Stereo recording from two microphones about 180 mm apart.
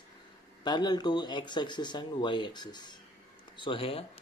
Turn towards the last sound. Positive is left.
turn(degrees=30)  # may be behind; listen again after turning